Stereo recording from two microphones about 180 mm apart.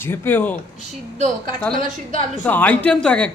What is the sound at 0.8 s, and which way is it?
Speech, 40° right (ahead or behind).